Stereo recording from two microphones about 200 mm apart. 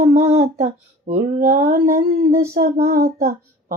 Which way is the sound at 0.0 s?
40° right (ahead or behind).